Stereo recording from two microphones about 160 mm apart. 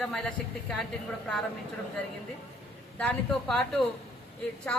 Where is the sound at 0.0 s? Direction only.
Centre (ahead or behind).